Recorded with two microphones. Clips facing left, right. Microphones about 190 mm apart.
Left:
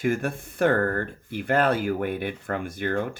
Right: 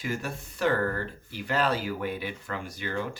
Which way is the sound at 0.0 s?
55° left (ahead or behind).